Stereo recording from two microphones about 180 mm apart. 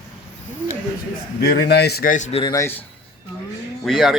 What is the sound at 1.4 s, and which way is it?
A man's voice, 65° left (ahead or behind).